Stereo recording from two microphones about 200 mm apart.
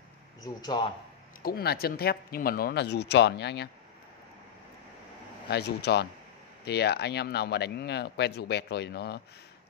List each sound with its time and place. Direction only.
0.4 s speech: 20° left (ahead or behind)
1.4 s speech: 50° left (ahead or behind)
5.5 s speech: 55° left (ahead or behind)